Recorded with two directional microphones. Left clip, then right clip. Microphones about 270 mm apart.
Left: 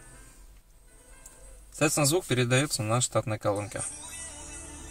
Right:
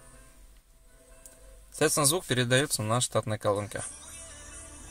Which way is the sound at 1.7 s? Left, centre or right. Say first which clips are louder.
Even; right.